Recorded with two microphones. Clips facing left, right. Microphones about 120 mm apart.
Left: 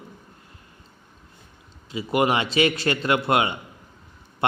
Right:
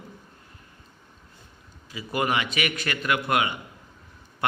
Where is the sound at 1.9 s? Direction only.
25° left (ahead or behind).